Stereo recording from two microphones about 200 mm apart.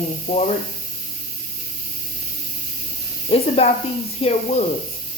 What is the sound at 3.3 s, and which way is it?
Speech, 30° left (ahead or behind).